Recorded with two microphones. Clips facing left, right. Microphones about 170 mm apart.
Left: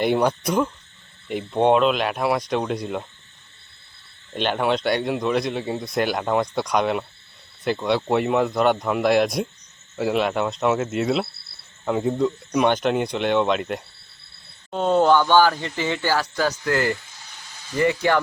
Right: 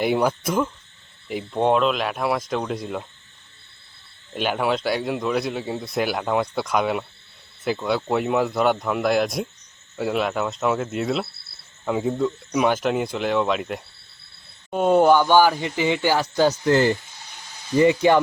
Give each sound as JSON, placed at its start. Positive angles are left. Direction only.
{"t": 0.0, "sound": "speech", "side_deg": -5}
{"t": 4.4, "sound": "speech", "side_deg": -5}
{"t": 14.7, "sound": "speech", "side_deg": -10}